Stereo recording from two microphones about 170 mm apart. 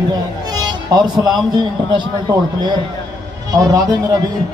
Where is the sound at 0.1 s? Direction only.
25° right (ahead or behind).